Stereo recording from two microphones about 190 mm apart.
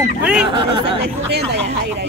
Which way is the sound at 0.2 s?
5° right (ahead or behind).